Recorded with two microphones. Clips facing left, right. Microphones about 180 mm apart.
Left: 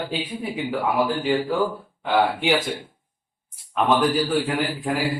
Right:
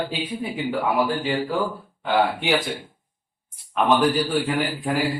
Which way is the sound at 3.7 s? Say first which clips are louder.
Right 1 dB; centre (ahead or behind).